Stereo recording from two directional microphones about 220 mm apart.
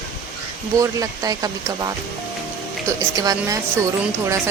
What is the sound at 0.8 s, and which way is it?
Speech, 15° right (ahead or behind).